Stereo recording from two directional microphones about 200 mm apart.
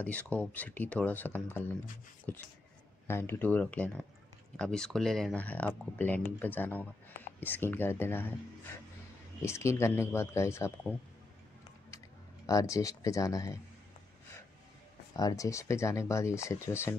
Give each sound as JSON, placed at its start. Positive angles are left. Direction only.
{"t": 0.0, "sound": "speech", "side_deg": 5}
{"t": 9.4, "sound": "speech", "side_deg": 15}
{"t": 12.4, "sound": "speech", "side_deg": 15}
{"t": 15.1, "sound": "speech", "side_deg": 15}